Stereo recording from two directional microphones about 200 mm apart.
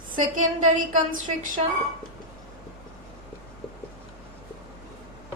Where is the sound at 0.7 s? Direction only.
40° right (ahead or behind).